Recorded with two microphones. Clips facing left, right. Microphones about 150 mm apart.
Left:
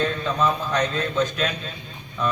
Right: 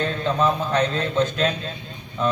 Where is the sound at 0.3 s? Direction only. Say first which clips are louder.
Right 5 dB; 25° right (ahead or behind).